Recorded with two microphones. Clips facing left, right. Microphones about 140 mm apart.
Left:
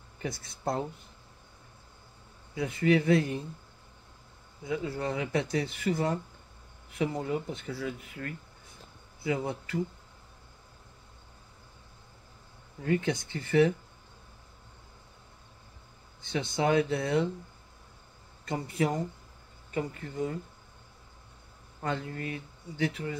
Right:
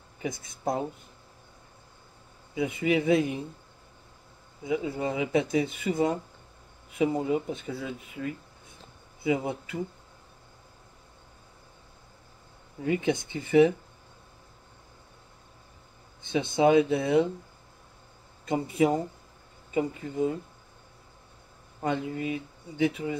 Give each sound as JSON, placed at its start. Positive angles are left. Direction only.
{"t": 0.2, "sound": "speech", "side_deg": -20}
{"t": 2.5, "sound": "speech", "side_deg": -20}
{"t": 4.6, "sound": "speech", "side_deg": -20}
{"t": 12.8, "sound": "speech", "side_deg": -15}
{"t": 16.3, "sound": "speech", "side_deg": -20}
{"t": 18.4, "sound": "speech", "side_deg": -20}
{"t": 21.8, "sound": "speech", "side_deg": -15}